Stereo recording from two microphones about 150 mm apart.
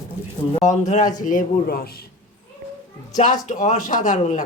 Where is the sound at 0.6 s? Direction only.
55° left (ahead or behind); by 2.0 s 90° left.